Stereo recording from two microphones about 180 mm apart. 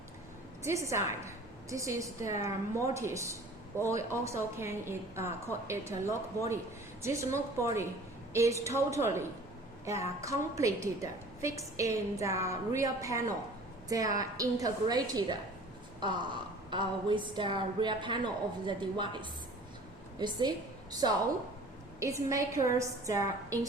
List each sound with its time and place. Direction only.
0.6 s a woman's voice: 15° right (ahead or behind)
20.1 s a woman's voice: 25° right (ahead or behind)
22.0 s a woman's voice: 15° right (ahead or behind)